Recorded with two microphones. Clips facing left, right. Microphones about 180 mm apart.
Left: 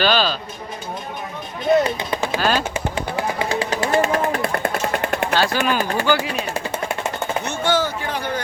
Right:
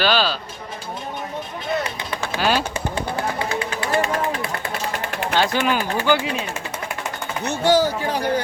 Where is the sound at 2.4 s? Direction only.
10° right (ahead or behind).